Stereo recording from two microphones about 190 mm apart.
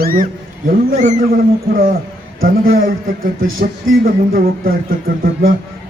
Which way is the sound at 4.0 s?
50° right (ahead or behind).